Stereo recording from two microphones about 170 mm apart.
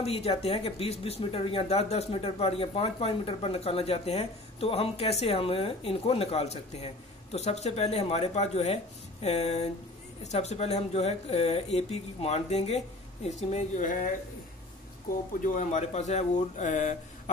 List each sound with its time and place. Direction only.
0.0 s speech: 35° left (ahead or behind)
15.4 s speech: 45° left (ahead or behind)